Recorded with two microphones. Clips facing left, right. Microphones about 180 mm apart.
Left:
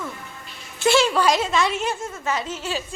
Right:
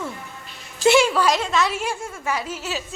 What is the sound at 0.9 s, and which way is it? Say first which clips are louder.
Speech: right 2 dB; 15° right (ahead or behind).